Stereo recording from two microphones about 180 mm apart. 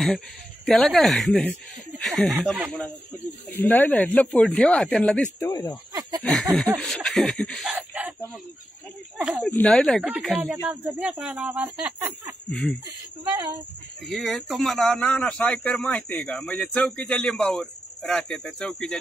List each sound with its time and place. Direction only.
0.7 s speech: centre (ahead or behind)
5.5 s speech: 20° left (ahead or behind)
6.2 s speech: 5° left (ahead or behind)
6.8 s a sound: 5° left (ahead or behind)
9.2 s speech: 5° right (ahead or behind)
12.4 s snicker: 5° left (ahead or behind)
12.8 s speech: 20° right (ahead or behind)
14.0 s speech: centre (ahead or behind)